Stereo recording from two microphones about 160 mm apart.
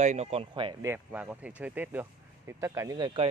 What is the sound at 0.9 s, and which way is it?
Speech, 10° right (ahead or behind).